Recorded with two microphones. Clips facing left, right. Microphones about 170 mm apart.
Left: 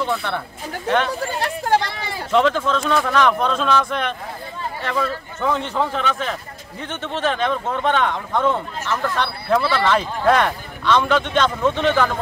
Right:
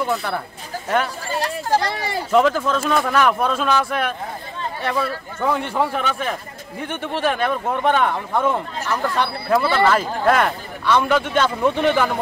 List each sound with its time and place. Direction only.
0.0 s speech: 5° right (ahead or behind)
1.2 s speech: 60° left (ahead or behind)
2.3 s speech: 5° right (ahead or behind)